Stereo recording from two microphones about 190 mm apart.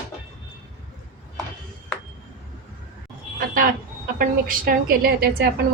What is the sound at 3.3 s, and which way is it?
A woman's voice, 50° right (ahead or behind).